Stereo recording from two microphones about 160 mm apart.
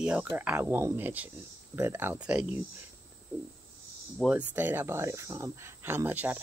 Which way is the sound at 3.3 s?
15° right (ahead or behind).